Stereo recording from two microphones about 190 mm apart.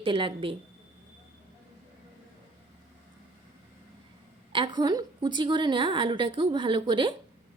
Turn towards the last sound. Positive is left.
turn(degrees=-25)  # may be behind; listen again after turning